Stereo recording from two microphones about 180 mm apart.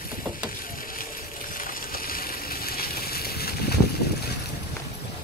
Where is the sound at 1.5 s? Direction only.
50° left (ahead or behind).